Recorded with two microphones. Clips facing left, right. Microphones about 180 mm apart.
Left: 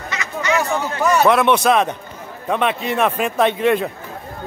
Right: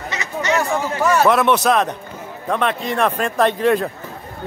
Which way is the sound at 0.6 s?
Centre (ahead or behind).